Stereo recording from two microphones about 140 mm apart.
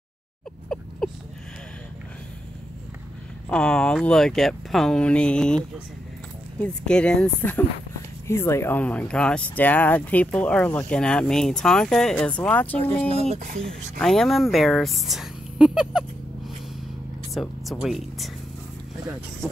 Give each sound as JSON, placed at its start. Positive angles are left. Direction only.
{"t": 0.7, "sound": "a sound", "side_deg": 5}
{"t": 3.4, "sound": "speech", "side_deg": 5}
{"t": 6.6, "sound": "speech", "side_deg": 5}
{"t": 13.1, "sound": "speech", "side_deg": -50}
{"t": 13.7, "sound": "speech", "side_deg": 5}